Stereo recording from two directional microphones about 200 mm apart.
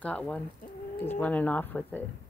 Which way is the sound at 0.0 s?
5° left (ahead or behind).